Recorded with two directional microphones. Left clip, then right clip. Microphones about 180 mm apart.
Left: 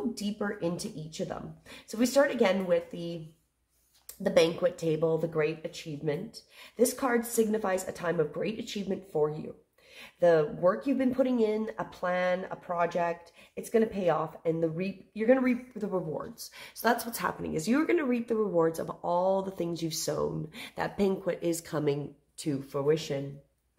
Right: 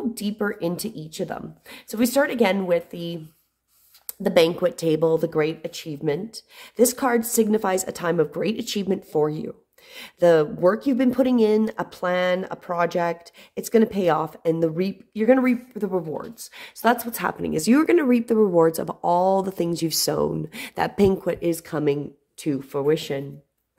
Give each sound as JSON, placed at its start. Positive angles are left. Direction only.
{"t": 0.1, "sound": "speech", "side_deg": -45}
{"t": 4.2, "sound": "speech", "side_deg": -50}